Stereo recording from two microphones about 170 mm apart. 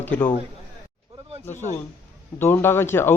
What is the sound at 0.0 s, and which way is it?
Speech, 10° left (ahead or behind).